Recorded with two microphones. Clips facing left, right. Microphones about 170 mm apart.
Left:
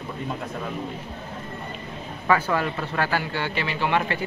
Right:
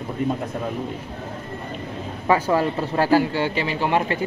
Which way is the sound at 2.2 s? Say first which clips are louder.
Right 3 dB; 30° right (ahead or behind).